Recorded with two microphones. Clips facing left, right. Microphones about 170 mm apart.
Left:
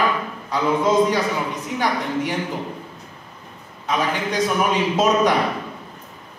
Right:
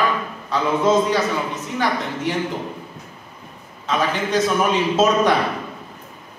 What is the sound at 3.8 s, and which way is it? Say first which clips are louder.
Speech: right 1 dB; 15° left (ahead or behind).